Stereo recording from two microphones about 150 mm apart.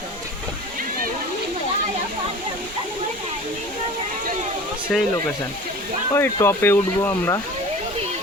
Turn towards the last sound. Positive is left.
turn(degrees=15)  # may be behind; listen again after turning